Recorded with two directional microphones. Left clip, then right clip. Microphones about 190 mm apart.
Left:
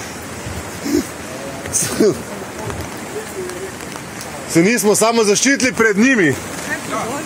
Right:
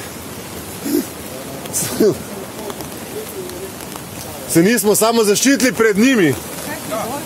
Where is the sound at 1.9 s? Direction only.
10° left (ahead or behind).